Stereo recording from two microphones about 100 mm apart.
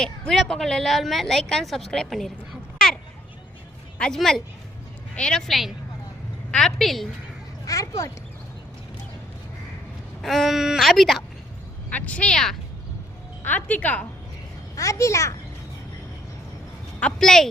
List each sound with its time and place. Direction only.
0.0 s a woman's voice: 5° left (ahead or behind)
1.9 s a sound: 5° left (ahead or behind)
3.9 s a woman's voice: 5° left (ahead or behind)
7.6 s a child's voice: 35° left (ahead or behind)
10.2 s a woman's voice: centre (ahead or behind)
11.9 s a woman's voice: 15° left (ahead or behind)
14.8 s a child's voice: 30° left (ahead or behind)
17.0 s a woman's voice: 5° left (ahead or behind)